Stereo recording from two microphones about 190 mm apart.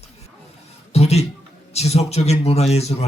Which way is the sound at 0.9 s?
35° left (ahead or behind).